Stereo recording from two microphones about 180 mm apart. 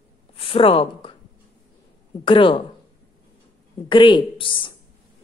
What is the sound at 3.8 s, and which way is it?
Speech, 25° left (ahead or behind).